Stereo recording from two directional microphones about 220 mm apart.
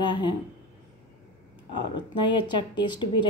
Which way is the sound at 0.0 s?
20° left (ahead or behind).